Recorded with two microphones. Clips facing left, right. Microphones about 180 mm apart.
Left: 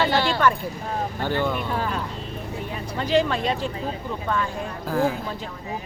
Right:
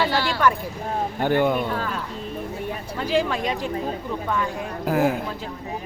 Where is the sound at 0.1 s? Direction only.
20° left (ahead or behind).